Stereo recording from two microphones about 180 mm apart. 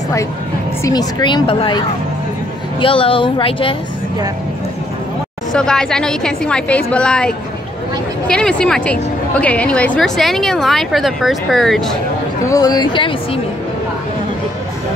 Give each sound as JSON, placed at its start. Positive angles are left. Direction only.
{"t": 0.8, "sound": "a woman's voice", "side_deg": 25}
{"t": 5.5, "sound": "a woman's voice", "side_deg": 5}
{"t": 12.4, "sound": "a woman's voice", "side_deg": 20}